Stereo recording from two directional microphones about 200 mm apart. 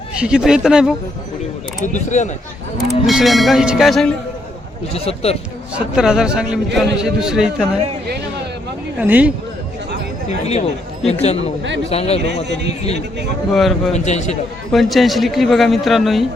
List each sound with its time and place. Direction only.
0.2 s a man's voice: 5° right (ahead or behind)
1.8 s speech: 35° left (ahead or behind)
3.1 s a man's voice: centre (ahead or behind)
4.9 s speech: 30° left (ahead or behind)
5.7 s a man's voice: 5° right (ahead or behind)
9.0 s speech: 5° right (ahead or behind)
10.4 s speech: 35° left (ahead or behind)
13.5 s a man's voice: centre (ahead or behind)
13.9 s speech: 35° left (ahead or behind)
14.7 s a man's voice: centre (ahead or behind)